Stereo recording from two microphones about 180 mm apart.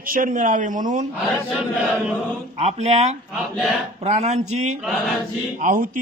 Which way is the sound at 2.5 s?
40° right (ahead or behind).